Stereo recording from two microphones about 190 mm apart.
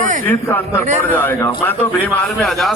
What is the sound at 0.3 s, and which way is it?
A man's voice, 10° left (ahead or behind).